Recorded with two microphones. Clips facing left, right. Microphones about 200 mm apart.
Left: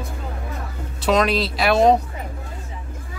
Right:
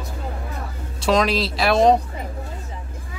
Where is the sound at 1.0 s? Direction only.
Centre (ahead or behind).